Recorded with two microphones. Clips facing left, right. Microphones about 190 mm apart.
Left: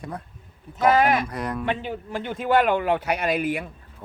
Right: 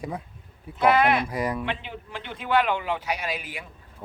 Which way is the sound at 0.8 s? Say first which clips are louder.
Left 1 dB; 45° left (ahead or behind).